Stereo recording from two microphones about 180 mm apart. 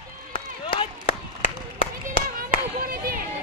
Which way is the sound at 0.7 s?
30° left (ahead or behind).